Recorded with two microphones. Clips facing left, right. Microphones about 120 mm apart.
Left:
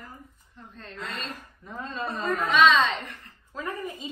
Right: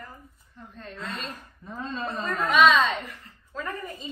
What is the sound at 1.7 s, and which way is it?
Speech, 15° left (ahead or behind).